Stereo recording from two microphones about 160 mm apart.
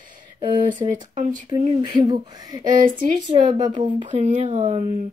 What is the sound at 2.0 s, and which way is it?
Speech, 25° right (ahead or behind).